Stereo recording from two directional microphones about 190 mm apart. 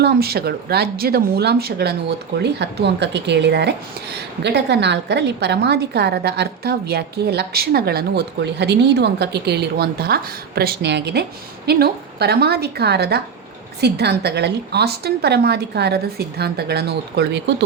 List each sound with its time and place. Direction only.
0.0 s speech: 55° right (ahead or behind)